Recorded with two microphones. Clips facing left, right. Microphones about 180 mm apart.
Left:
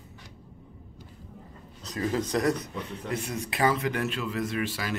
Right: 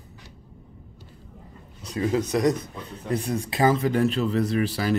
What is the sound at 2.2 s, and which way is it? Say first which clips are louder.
Speech: right 4 dB; 15° right (ahead or behind).